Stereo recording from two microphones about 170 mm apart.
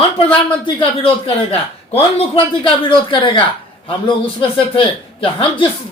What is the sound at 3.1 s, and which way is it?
Speech, 30° left (ahead or behind).